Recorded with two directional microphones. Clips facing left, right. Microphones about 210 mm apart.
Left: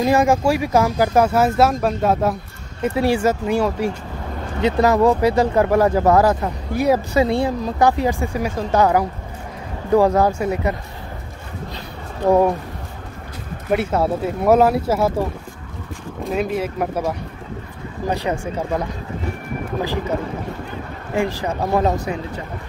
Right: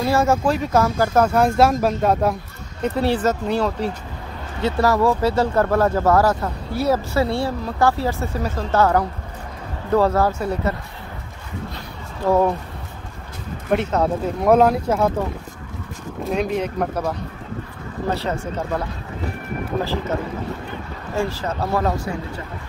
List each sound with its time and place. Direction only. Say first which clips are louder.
0.0 s speech: left 2 dB; 15° left (ahead or behind)
12.3 s speech: left 2 dB; 15° left (ahead or behind)
13.7 s speech: left 1 dB; 10° left (ahead or behind)
16.3 s speech: even; centre (ahead or behind)
21.1 s speech: left 2 dB; 15° left (ahead or behind)